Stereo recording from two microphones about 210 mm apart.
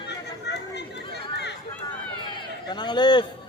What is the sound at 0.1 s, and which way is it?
Chatter, 55° left (ahead or behind).